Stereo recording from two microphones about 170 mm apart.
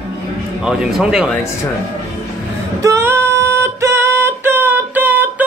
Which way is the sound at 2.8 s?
15° right (ahead or behind).